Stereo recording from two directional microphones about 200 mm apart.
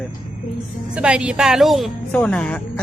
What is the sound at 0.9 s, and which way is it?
Speech, 5° right (ahead or behind).